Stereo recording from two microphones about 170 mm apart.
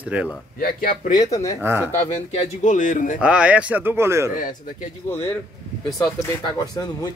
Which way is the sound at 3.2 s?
5° right (ahead or behind).